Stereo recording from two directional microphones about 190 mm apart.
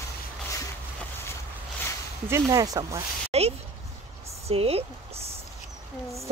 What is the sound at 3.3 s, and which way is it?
Speech, 30° right (ahead or behind).